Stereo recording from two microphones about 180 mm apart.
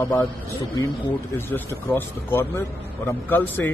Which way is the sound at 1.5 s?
15° left (ahead or behind).